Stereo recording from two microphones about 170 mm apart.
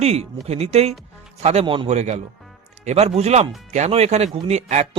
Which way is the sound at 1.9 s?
40° right (ahead or behind).